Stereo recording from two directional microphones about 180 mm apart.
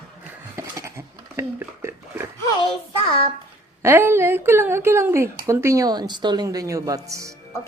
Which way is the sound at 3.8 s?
15° right (ahead or behind).